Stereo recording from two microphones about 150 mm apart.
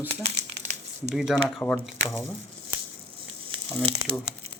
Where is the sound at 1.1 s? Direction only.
Centre (ahead or behind).